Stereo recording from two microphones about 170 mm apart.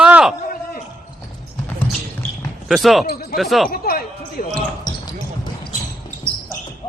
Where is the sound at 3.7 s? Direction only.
65° left (ahead or behind).